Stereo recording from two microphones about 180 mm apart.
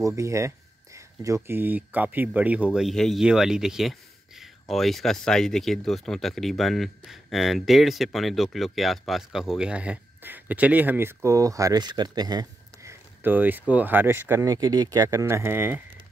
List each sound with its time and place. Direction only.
0.0 s speech: 15° right (ahead or behind)
13.2 s speech: 10° right (ahead or behind)